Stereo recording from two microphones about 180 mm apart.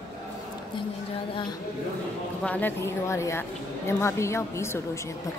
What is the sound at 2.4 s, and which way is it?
A woman's voice, 10° left (ahead or behind).